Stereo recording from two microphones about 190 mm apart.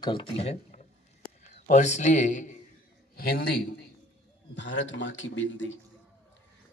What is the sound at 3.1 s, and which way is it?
Speech, 55° left (ahead or behind).